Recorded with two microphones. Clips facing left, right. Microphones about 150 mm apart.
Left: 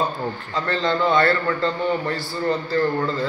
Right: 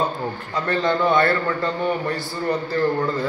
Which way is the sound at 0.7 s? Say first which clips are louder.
Right 1 dB; 15° right (ahead or behind).